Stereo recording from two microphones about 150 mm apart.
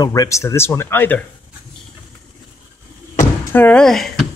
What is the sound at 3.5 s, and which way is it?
Speech, 10° left (ahead or behind).